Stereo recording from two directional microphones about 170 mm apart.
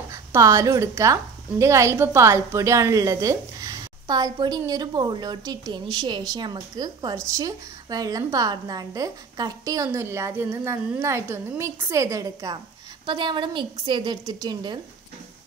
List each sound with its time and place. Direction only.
0.1 s a woman's voice: 20° right (ahead or behind)